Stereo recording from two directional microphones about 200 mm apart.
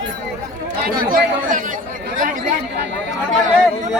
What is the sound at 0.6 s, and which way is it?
Speech, 45° right (ahead or behind).